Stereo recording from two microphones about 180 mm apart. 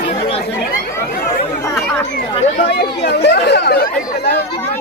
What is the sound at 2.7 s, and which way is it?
Chatter, 65° left (ahead or behind).